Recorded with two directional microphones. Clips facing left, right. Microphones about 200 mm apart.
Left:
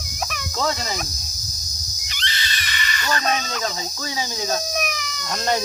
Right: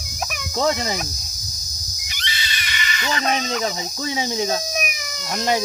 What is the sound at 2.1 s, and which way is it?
Screaming, 15° right (ahead or behind).